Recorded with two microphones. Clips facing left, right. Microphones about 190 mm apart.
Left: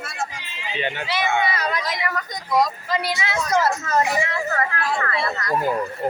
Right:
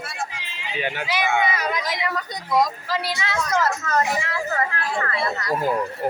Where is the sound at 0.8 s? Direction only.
10° right (ahead or behind).